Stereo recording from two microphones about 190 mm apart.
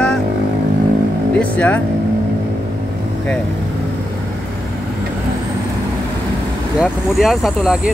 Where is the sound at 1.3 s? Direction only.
5° left (ahead or behind).